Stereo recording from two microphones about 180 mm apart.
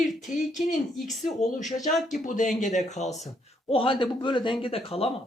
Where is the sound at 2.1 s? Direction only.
45° left (ahead or behind).